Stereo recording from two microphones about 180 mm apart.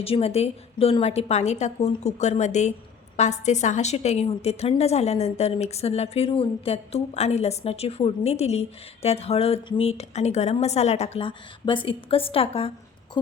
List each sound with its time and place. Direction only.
0.0 s a woman's voice: 35° left (ahead or behind)